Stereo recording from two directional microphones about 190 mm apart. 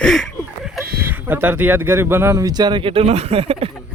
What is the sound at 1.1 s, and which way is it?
Speech, 10° right (ahead or behind).